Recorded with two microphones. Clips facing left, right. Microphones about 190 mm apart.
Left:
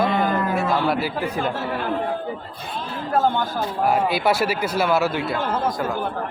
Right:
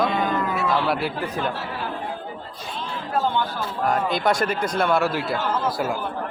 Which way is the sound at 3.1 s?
45° left (ahead or behind).